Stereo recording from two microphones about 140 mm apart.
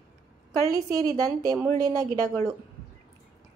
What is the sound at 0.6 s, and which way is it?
A woman's voice, 25° right (ahead or behind).